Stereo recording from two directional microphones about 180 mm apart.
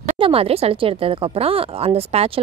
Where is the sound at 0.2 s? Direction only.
35° right (ahead or behind).